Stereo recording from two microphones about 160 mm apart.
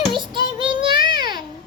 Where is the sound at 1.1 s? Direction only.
25° right (ahead or behind).